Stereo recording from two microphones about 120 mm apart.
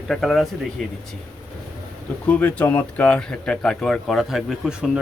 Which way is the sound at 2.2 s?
15° left (ahead or behind).